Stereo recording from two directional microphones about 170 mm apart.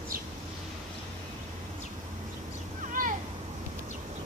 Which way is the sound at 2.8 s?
50° right (ahead or behind).